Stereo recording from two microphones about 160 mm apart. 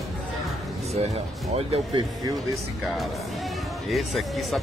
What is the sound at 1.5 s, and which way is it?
Speech, 35° right (ahead or behind).